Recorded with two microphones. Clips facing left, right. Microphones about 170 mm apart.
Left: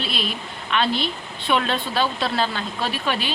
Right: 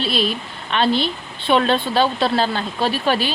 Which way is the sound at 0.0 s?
30° right (ahead or behind).